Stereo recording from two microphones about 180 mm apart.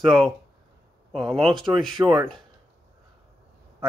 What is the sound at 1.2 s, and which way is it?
Speech, centre (ahead or behind).